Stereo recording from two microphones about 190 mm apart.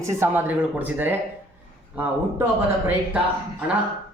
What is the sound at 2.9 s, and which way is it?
Speech, 10° right (ahead or behind).